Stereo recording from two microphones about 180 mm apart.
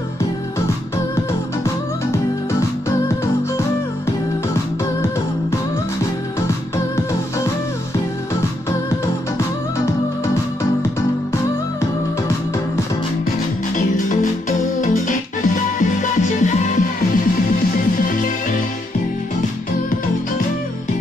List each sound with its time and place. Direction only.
13.7 s music: 45° left (ahead or behind)